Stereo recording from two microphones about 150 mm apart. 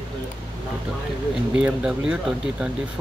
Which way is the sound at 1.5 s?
5° right (ahead or behind).